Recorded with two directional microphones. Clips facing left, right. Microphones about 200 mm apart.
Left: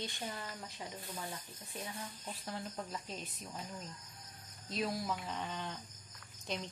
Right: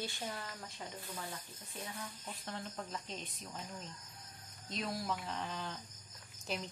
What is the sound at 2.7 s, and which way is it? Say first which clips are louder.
Speech: left 1 dB; 5° left (ahead or behind).